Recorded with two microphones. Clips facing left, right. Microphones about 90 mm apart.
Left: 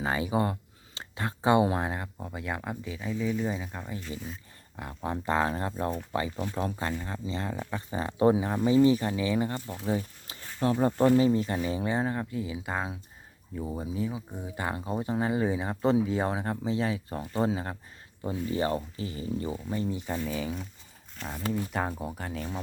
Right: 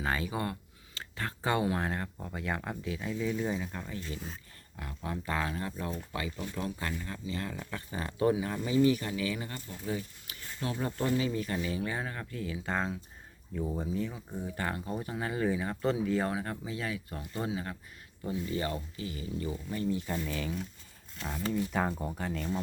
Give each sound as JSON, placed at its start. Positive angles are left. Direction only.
{"t": 0.0, "sound": "speech", "side_deg": 15}
{"t": 4.8, "sound": "speech", "side_deg": 30}
{"t": 9.6, "sound": "speech", "side_deg": 90}
{"t": 9.9, "sound": "speech", "side_deg": 30}
{"t": 12.3, "sound": "speech", "side_deg": 10}
{"t": 21.7, "sound": "speech", "side_deg": 5}